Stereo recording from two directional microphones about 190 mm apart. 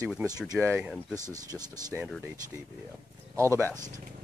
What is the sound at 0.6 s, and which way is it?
Speech, 10° right (ahead or behind).